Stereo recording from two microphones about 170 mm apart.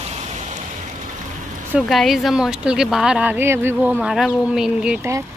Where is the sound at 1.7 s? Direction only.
Centre (ahead or behind).